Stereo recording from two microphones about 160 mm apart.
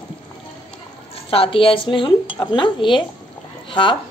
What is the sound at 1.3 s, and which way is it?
A woman's voice, 35° left (ahead or behind).